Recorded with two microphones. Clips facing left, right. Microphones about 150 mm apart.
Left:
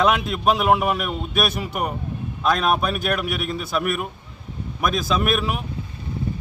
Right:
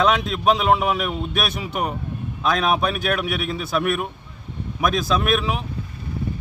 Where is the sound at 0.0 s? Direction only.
5° left (ahead or behind).